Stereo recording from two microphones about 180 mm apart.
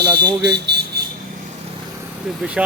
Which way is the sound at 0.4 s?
70° right (ahead or behind).